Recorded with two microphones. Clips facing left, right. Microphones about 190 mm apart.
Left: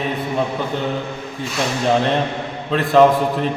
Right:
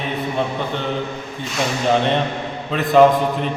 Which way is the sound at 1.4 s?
Centre (ahead or behind).